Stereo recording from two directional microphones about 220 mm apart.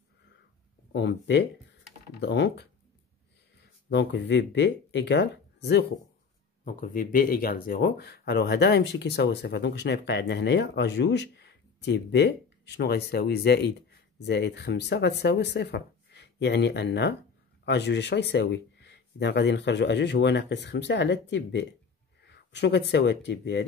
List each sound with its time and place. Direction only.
0.9 s speech: 55° left (ahead or behind)
3.9 s speech: 55° left (ahead or behind)
6.6 s speech: 40° left (ahead or behind)